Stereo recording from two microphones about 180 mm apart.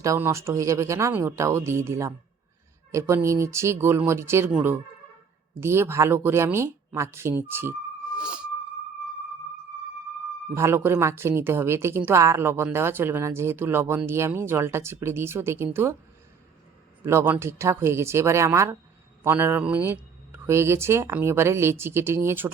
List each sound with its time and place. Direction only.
0.0 s a woman's voice: 15° right (ahead or behind)
10.5 s a woman's voice: 15° right (ahead or behind)
17.1 s a woman's voice: 10° right (ahead or behind)